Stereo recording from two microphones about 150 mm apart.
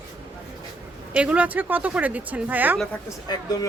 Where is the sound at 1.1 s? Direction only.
10° right (ahead or behind).